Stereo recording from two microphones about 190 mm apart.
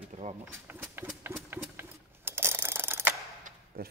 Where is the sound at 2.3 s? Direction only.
10° right (ahead or behind).